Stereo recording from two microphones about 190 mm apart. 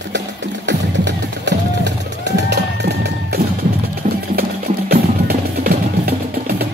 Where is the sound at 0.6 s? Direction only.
65° right (ahead or behind).